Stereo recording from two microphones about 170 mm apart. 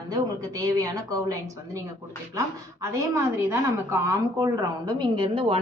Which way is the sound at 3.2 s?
15° right (ahead or behind).